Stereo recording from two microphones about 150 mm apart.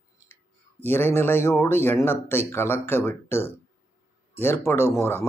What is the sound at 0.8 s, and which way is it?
Speech, 15° left (ahead or behind).